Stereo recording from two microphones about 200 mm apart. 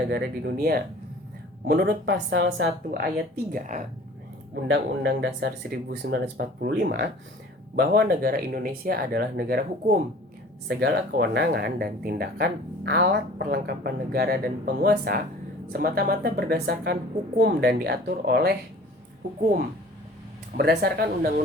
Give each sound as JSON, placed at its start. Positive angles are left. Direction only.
{"t": 0.1, "sound": "speech", "side_deg": -50}
{"t": 4.7, "sound": "speech", "side_deg": -60}
{"t": 20.6, "sound": "speech", "side_deg": -50}